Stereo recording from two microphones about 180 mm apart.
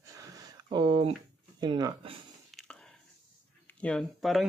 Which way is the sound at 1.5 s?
25° right (ahead or behind).